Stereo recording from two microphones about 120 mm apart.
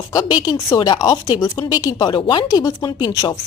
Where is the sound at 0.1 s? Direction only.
35° left (ahead or behind).